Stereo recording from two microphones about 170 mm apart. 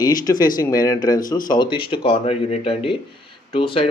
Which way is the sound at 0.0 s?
25° left (ahead or behind).